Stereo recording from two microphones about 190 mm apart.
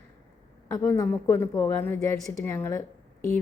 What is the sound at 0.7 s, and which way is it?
A woman's voice, 15° left (ahead or behind).